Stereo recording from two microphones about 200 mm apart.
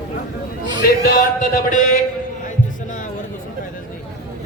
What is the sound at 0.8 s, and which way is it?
Music, 50° left (ahead or behind).